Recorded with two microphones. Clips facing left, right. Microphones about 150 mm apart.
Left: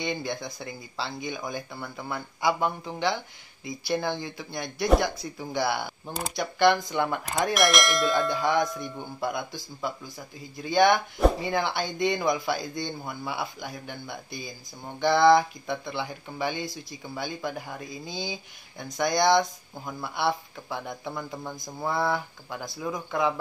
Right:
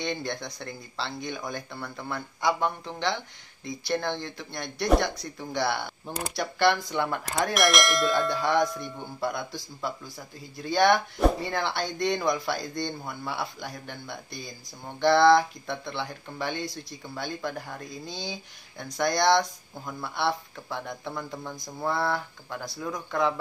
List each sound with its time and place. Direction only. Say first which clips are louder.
0.0 s speech: left 1 dB; 5° left (ahead or behind)